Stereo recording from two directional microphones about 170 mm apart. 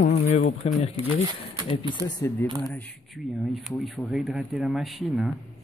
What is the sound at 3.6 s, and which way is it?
Speech, centre (ahead or behind).